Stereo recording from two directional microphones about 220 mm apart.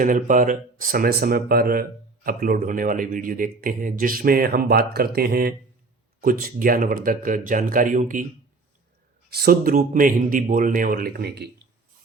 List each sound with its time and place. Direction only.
0.0 s speech: 35° right (ahead or behind)
9.3 s speech: 45° right (ahead or behind)